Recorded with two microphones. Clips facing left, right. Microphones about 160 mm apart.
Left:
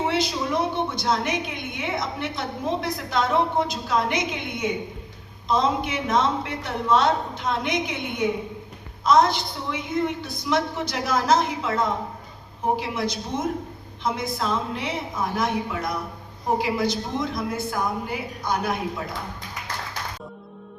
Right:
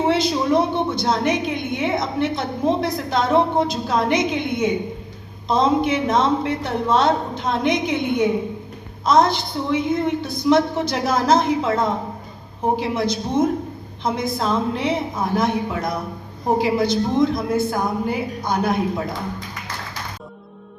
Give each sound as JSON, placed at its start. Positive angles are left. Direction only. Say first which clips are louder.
{"t": 0.0, "sound": "a woman's voice", "louder": "right 6 dB", "side_deg": -30}